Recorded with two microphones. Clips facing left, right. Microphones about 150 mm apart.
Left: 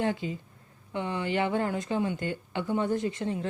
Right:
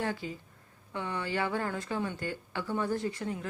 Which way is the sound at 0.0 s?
20° left (ahead or behind).